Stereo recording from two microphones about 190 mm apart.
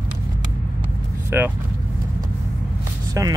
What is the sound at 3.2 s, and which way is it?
Speech, 15° right (ahead or behind).